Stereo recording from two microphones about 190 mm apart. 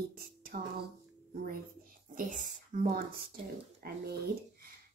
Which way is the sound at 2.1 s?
45° right (ahead or behind).